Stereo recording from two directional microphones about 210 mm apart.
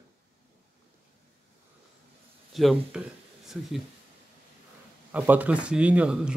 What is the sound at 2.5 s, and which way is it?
Speech, centre (ahead or behind).